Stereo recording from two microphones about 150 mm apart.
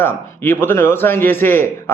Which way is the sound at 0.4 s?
15° left (ahead or behind).